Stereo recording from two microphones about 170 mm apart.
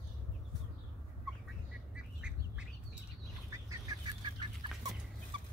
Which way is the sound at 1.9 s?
5° right (ahead or behind).